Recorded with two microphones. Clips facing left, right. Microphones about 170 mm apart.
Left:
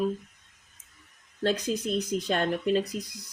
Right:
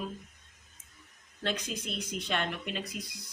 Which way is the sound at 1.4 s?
40° left (ahead or behind).